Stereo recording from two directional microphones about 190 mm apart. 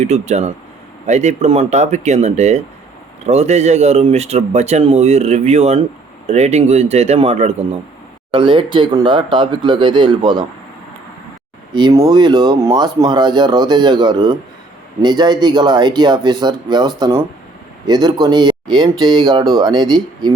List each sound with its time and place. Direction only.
0.0 s speech: 35° right (ahead or behind)
11.7 s speech: 20° right (ahead or behind)